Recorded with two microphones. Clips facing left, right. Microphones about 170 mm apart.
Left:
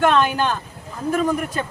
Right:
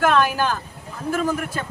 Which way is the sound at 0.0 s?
5° right (ahead or behind).